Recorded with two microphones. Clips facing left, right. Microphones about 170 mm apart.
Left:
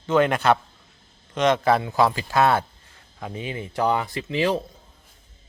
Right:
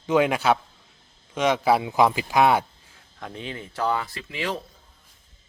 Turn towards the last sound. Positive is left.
turn(degrees=25)  # may be behind; listen again after turning